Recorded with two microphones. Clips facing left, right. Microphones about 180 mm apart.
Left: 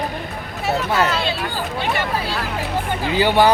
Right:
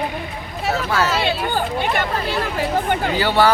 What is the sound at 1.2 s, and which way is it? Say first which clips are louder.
Speech: right 3 dB; 55° right (ahead or behind).